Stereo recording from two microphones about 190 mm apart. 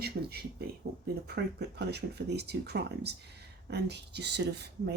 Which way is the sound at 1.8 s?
60° right (ahead or behind).